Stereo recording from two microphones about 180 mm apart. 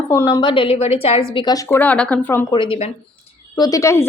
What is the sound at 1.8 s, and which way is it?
Speech, 10° left (ahead or behind).